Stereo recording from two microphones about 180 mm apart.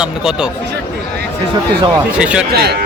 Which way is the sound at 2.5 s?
60° right (ahead or behind).